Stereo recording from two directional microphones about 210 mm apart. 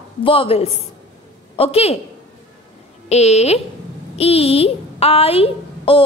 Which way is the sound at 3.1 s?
30° left (ahead or behind).